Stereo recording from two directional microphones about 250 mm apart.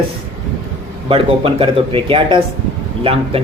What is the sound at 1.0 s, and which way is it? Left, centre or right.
Speech, right.